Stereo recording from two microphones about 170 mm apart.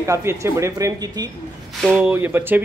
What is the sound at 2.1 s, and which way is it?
Speech, 10° right (ahead or behind).